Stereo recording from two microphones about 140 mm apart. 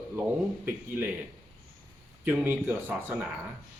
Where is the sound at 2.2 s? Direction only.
15° right (ahead or behind).